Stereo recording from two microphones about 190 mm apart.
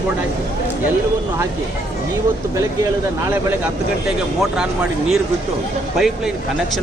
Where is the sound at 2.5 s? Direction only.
15° right (ahead or behind).